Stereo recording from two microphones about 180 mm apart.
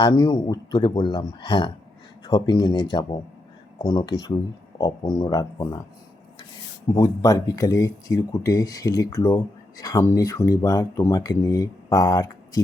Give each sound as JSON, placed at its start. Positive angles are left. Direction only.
{"t": 0.0, "sound": "speech", "side_deg": 25}
{"t": 6.9, "sound": "speech", "side_deg": 20}